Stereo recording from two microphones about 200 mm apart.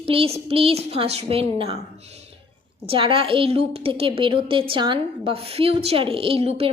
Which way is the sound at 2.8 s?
25° right (ahead or behind).